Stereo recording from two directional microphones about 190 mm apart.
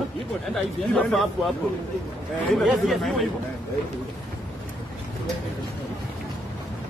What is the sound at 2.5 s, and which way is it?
Speech, centre (ahead or behind).